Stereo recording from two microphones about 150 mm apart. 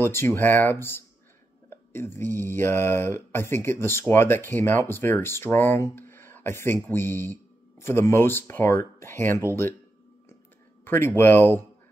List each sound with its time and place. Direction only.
0.1 s speech: 15° left (ahead or behind)
10.8 s speech: 15° left (ahead or behind)